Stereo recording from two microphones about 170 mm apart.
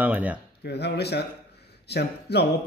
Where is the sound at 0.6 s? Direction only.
75° left (ahead or behind).